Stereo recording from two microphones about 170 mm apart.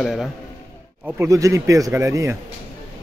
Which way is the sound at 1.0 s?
15° right (ahead or behind).